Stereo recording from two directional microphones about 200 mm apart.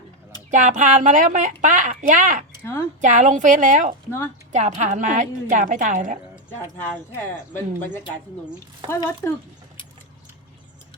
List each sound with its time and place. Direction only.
0.5 s speech: 40° right (ahead or behind)
6.7 s speech: 10° left (ahead or behind)